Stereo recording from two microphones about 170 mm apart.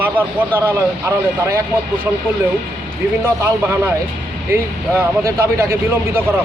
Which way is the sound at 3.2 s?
15° right (ahead or behind).